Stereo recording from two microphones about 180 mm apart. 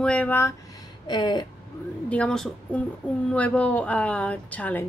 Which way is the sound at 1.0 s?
25° left (ahead or behind).